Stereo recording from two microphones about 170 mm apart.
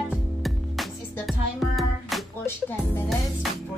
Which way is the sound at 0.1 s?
Centre (ahead or behind).